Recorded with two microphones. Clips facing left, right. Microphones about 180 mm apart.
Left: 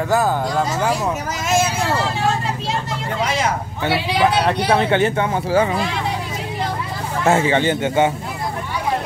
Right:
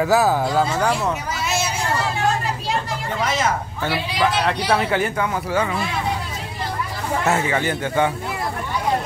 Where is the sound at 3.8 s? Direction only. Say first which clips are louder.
Left 4 dB; 25° left (ahead or behind).